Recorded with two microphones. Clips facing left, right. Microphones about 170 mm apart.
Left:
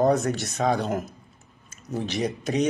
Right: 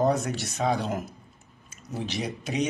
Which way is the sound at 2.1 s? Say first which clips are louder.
Left 5 dB; centre (ahead or behind).